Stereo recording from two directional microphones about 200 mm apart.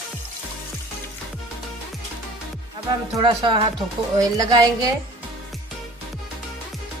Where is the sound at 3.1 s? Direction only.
25° right (ahead or behind).